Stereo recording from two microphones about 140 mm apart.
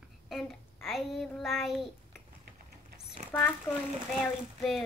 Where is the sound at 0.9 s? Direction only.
Centre (ahead or behind).